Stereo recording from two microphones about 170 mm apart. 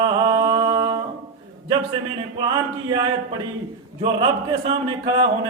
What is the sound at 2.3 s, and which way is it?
A man's voice, 25° right (ahead or behind).